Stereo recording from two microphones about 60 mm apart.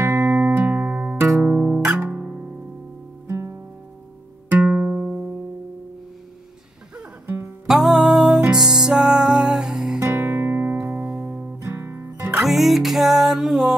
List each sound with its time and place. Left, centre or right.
0.0 s music: right
0.7 s music: right
1.4 s music: right
2.3 s music: centre
3.3 s music: right
4.5 s music: right
7.6 s music: centre
9.9 s music: right
12.4 s music: centre